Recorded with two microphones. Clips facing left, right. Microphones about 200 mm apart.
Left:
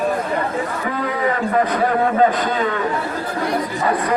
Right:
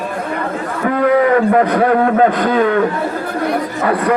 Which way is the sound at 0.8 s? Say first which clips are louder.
Right 13 dB; 60° right (ahead or behind).